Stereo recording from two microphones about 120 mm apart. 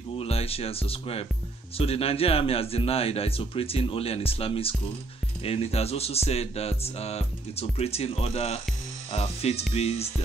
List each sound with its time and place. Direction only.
0.2 s speech: 55° left (ahead or behind)